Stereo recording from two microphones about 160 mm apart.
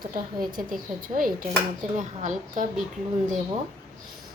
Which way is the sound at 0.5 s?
60° right (ahead or behind).